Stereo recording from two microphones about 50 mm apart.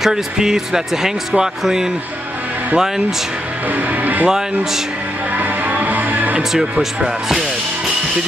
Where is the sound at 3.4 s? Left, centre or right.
Right.